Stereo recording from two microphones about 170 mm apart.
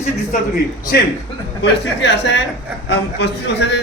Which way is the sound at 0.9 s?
70° left (ahead or behind).